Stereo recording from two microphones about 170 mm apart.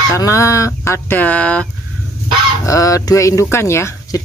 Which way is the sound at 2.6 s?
20° left (ahead or behind).